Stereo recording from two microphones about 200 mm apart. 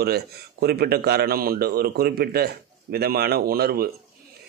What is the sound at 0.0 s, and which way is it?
A man's voice, 50° right (ahead or behind).